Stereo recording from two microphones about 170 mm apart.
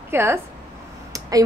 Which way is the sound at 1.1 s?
20° right (ahead or behind).